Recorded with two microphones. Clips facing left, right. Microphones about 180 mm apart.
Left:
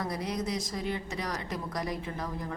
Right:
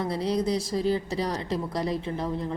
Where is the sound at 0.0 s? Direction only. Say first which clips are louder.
Right 7 dB; 30° right (ahead or behind).